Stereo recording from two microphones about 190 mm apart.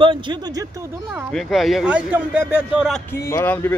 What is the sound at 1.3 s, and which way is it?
Speech, centre (ahead or behind).